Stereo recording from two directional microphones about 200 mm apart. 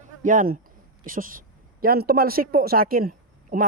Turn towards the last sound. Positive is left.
turn(degrees=-45)  # may be behind; listen again after turning